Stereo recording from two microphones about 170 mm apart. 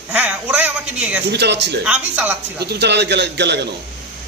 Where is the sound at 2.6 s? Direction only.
80° right.